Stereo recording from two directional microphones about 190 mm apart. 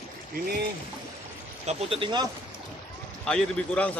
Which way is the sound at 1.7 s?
30° right (ahead or behind).